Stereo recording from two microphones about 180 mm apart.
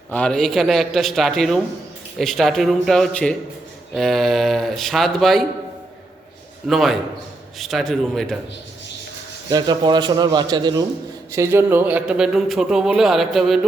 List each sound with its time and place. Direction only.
0.1 s speech: 5° left (ahead or behind)
6.7 s speech: centre (ahead or behind)
9.5 s a man's voice: 25° right (ahead or behind); by 13.6 s centre (ahead or behind)